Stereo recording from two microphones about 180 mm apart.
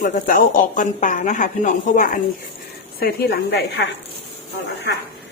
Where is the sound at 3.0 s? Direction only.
60° left (ahead or behind).